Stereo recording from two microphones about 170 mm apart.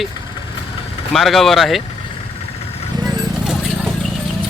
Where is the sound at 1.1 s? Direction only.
Centre (ahead or behind).